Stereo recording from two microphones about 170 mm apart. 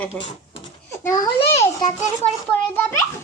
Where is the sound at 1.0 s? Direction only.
20° left (ahead or behind).